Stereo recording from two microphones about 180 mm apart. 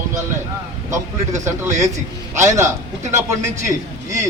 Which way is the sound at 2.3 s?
15° right (ahead or behind).